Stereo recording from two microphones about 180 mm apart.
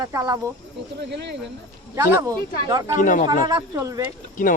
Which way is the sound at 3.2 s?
20° right (ahead or behind).